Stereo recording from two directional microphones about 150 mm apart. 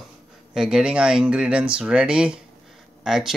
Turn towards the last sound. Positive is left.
turn(degrees=-5)  # may be behind; listen again after turning